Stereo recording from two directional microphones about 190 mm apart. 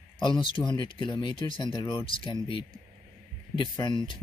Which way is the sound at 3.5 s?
25° left (ahead or behind).